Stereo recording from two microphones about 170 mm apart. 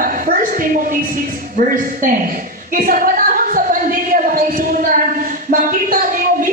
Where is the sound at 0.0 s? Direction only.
55° right (ahead or behind).